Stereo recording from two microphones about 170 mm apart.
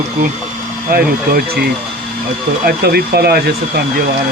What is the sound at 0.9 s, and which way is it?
Speech, 65° right (ahead or behind).